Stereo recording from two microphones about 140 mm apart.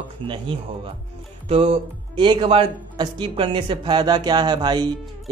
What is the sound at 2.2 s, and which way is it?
Speech, 35° right (ahead or behind).